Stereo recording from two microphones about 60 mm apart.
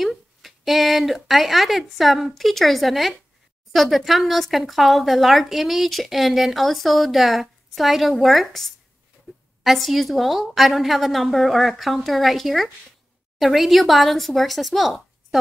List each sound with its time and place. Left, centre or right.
0.0 s speech: centre
9.3 s a sound: right
9.6 s speech: centre